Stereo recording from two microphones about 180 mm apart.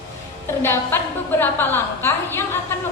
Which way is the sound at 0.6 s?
15° left (ahead or behind).